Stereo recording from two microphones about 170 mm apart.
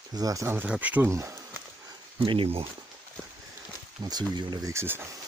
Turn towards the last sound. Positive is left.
turn(degrees=-15)  # may be behind; listen again after turning